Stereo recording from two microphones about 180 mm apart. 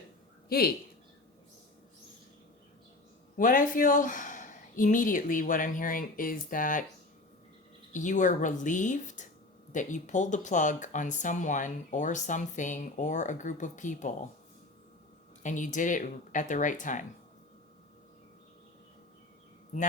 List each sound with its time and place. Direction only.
0.4 s a woman's voice: 60° left (ahead or behind)
3.3 s speech: 45° left (ahead or behind)
7.9 s speech: 45° left (ahead or behind)
15.4 s speech: 45° left (ahead or behind)